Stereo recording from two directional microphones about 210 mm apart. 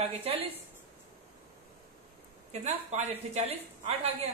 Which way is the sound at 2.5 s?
30° right (ahead or behind).